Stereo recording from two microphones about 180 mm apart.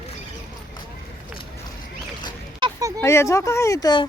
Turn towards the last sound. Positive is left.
turn(degrees=20)  # may be behind; listen again after turning